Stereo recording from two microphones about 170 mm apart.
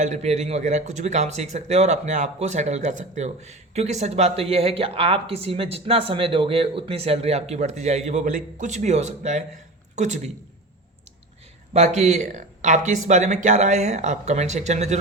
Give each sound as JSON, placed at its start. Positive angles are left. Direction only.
{"t": 0.0, "sound": "speech", "side_deg": -40}
{"t": 11.7, "sound": "speech", "side_deg": -40}